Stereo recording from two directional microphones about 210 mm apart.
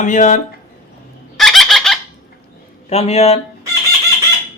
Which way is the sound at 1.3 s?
Centre (ahead or behind).